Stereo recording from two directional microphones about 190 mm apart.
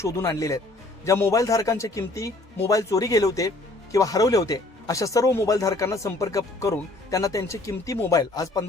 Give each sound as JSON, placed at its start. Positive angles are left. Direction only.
{"t": 0.0, "sound": "speech", "side_deg": 15}